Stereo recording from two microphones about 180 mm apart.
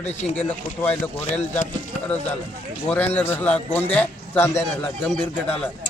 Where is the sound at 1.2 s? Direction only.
40° left (ahead or behind).